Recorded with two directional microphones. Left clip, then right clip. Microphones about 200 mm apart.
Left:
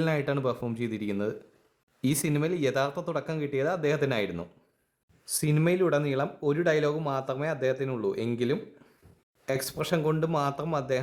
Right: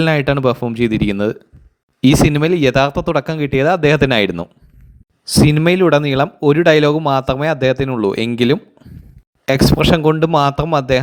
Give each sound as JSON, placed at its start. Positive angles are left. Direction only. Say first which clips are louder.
{"t": 0.0, "sound": "speech", "louder": "right 13 dB", "side_deg": -35}
{"t": 9.5, "sound": "speech", "louder": "right 16 dB", "side_deg": -35}